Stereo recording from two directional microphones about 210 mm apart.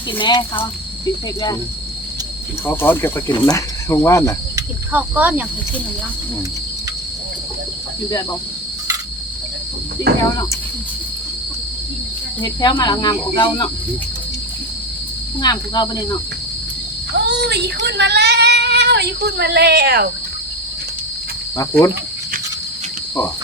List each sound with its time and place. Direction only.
0.2 s speech: 20° left (ahead or behind)
2.6 s speech: 10° left (ahead or behind)
4.5 s cricket: 5° right (ahead or behind)
10.1 s speech: 50° right (ahead or behind)
12.4 s speech: 20° left (ahead or behind)
15.4 s speech: 20° left (ahead or behind)
17.2 s a sound: 55° right (ahead or behind)
17.8 s speech: 55° right (ahead or behind)
21.6 s speech: 15° left (ahead or behind)